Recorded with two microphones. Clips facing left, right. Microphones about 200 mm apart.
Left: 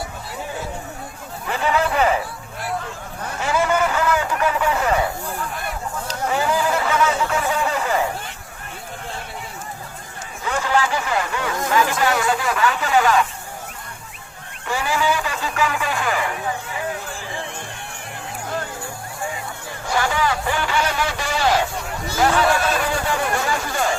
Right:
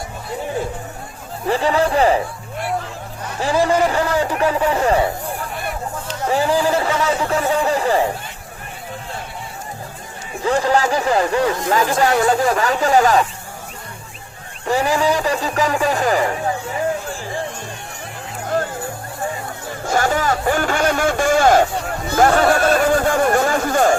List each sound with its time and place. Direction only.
1.5 s speech: 35° right (ahead or behind)
3.4 s speech: 35° right (ahead or behind)
6.2 s speech: 35° right (ahead or behind)
10.4 s speech: 35° right (ahead or behind)
14.6 s speech: 35° right (ahead or behind)
19.8 s speech: 45° right (ahead or behind)